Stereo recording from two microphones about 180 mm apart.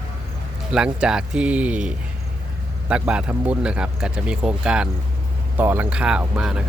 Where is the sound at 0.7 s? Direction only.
5° right (ahead or behind).